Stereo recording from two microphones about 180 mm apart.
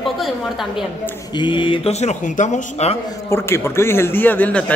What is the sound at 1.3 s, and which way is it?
Speech, 25° left (ahead or behind).